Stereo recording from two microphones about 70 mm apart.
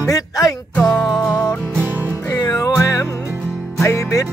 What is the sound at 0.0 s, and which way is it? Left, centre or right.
Music, left.